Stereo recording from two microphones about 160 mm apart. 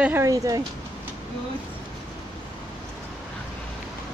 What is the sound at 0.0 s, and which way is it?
Speech, 15° right (ahead or behind).